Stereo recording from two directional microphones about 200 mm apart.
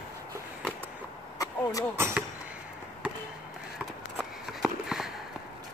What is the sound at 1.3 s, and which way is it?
Vehicle, 15° left (ahead or behind).